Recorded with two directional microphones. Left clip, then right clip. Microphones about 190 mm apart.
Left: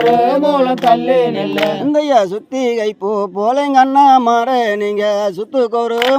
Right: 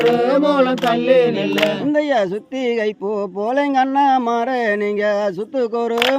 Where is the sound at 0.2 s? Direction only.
15° left (ahead or behind).